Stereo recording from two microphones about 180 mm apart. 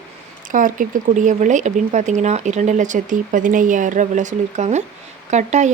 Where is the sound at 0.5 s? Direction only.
45° right (ahead or behind).